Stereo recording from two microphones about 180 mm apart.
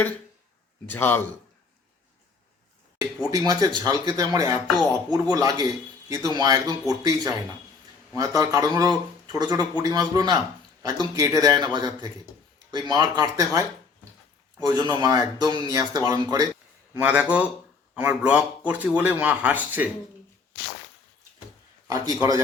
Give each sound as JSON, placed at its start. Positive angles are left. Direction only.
{"t": 0.9, "sound": "a man's voice", "side_deg": 10}
{"t": 3.2, "sound": "speech", "side_deg": -20}
{"t": 16.9, "sound": "a man's voice", "side_deg": -10}
{"t": 21.8, "sound": "speech", "side_deg": -20}